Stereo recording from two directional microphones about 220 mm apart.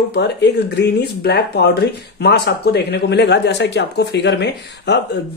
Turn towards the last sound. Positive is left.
turn(degrees=50)  # may be behind; listen again after turning